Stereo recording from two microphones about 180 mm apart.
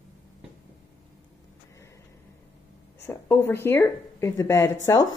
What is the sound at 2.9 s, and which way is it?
Speech, 15° left (ahead or behind).